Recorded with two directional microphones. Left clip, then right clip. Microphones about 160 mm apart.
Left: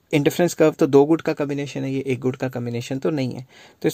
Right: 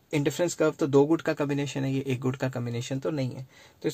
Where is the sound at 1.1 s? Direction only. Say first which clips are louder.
Left 5 dB; 30° left (ahead or behind).